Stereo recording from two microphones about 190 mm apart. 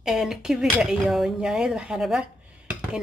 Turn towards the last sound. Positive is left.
turn(degrees=-5)  # may be behind; listen again after turning